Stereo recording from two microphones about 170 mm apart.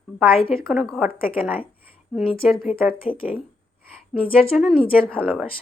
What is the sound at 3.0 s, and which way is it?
Speech, 30° left (ahead or behind).